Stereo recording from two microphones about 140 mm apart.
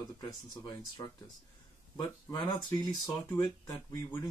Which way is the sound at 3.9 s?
20° left (ahead or behind).